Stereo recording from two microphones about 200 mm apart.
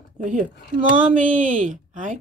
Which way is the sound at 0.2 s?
40° right (ahead or behind).